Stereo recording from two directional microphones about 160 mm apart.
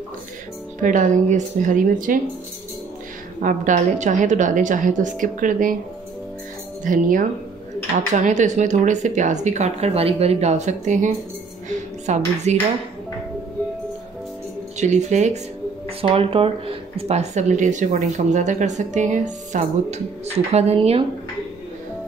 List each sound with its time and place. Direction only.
0.7 s speech: 50° right (ahead or behind)
3.3 s speech: 55° right (ahead or behind)
6.8 s speech: 55° right (ahead or behind)
14.8 s speech: 45° right (ahead or behind)
16.0 s speech: 35° right (ahead or behind)